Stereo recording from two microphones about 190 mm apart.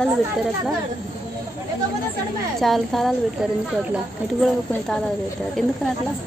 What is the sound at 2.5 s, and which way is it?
Speech, centre (ahead or behind).